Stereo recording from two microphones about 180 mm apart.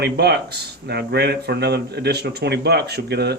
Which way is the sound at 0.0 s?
65° right (ahead or behind).